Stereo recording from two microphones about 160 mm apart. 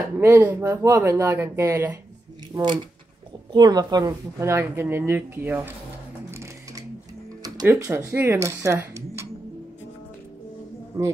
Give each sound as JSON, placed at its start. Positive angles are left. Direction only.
{"t": 0.2, "sound": "speech", "side_deg": -10}
{"t": 2.5, "sound": "speech", "side_deg": -30}
{"t": 7.4, "sound": "music", "side_deg": -25}
{"t": 7.7, "sound": "speech", "side_deg": -15}